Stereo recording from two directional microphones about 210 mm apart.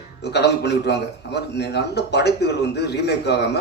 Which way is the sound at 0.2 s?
50° left (ahead or behind).